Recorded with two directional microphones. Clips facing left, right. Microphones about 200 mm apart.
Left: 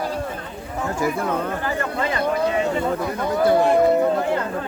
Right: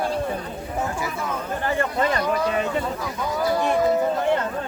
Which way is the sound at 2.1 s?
25° left (ahead or behind).